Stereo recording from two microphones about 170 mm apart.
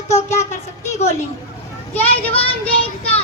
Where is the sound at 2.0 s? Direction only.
35° left (ahead or behind).